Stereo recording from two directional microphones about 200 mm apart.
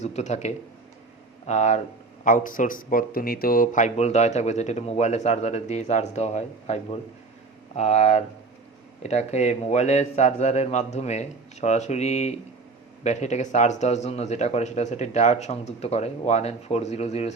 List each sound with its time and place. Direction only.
0.0 s speech: 35° left (ahead or behind)